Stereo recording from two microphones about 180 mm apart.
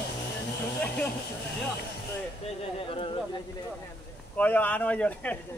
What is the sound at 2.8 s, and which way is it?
Speech, 30° left (ahead or behind).